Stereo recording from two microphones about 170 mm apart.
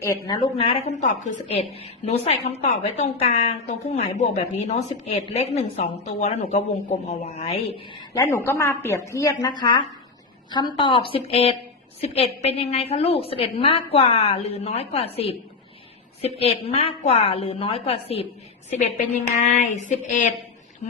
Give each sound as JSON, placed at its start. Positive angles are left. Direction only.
{"t": 0.3, "sound": "a woman's voice", "side_deg": 25}
{"t": 8.1, "sound": "a woman's voice", "side_deg": 20}
{"t": 18.7, "sound": "a sound", "side_deg": 45}